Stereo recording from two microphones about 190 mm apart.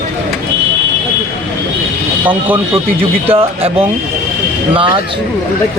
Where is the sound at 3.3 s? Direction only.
30° right (ahead or behind).